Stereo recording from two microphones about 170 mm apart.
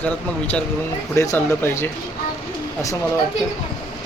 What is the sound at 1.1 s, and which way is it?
Speech, 15° left (ahead or behind).